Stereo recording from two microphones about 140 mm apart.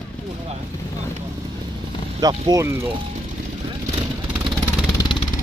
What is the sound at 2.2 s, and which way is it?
Speech, 30° right (ahead or behind).